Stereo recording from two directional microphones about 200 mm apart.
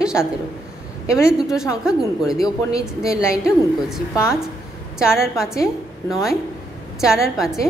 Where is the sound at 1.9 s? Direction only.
5° right (ahead or behind).